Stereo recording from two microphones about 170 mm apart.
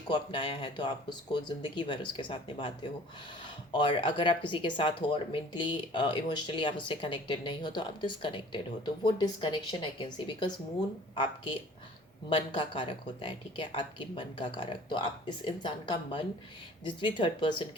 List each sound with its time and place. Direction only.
0.1 s speech: 30° left (ahead or behind)